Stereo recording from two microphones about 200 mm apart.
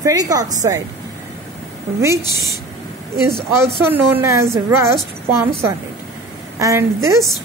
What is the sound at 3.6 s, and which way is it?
A woman's voice, 10° right (ahead or behind).